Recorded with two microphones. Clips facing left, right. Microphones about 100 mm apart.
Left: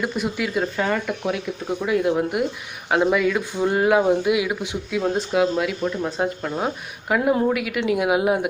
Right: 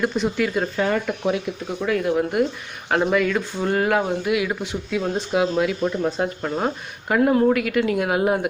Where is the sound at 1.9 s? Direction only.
20° left (ahead or behind).